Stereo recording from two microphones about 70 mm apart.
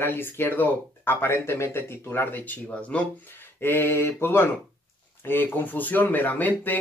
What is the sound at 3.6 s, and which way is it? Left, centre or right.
Speech, left.